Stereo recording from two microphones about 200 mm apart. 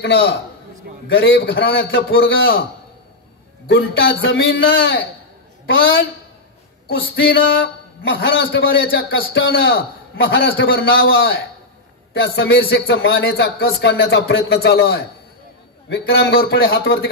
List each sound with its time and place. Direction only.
0.0 s a man's voice: 55° left (ahead or behind)
3.6 s a man's voice: 60° left (ahead or behind)
7.2 s a man's voice: 55° left (ahead or behind)